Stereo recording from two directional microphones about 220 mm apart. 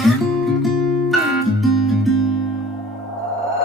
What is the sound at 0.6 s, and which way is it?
Music, centre (ahead or behind).